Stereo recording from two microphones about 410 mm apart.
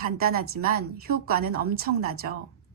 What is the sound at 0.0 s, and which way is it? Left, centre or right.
A woman's voice, right.